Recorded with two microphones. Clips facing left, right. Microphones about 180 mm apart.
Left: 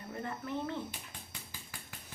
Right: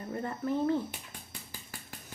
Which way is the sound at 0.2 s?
40° right (ahead or behind).